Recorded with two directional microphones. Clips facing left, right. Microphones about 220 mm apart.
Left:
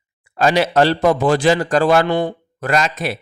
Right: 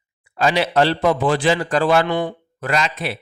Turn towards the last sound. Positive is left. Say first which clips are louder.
# left 3 dB
turn(degrees=45)  # may be behind; listen again after turning